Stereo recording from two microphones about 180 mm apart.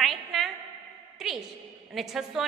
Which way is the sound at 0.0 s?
Centre (ahead or behind).